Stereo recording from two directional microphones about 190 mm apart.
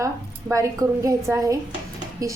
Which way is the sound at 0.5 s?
15° right (ahead or behind).